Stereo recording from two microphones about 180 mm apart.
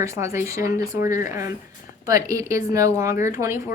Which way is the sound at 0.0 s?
15° right (ahead or behind).